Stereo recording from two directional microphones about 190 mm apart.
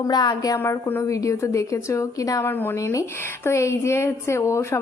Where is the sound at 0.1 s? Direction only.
20° left (ahead or behind).